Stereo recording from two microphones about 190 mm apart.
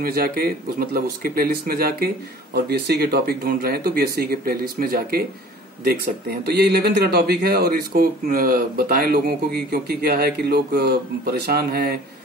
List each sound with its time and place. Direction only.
0.0 s speech: 50° right (ahead or behind)
6.4 s speech: 60° right (ahead or behind)